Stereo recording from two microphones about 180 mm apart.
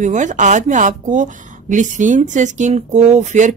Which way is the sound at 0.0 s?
40° right (ahead or behind).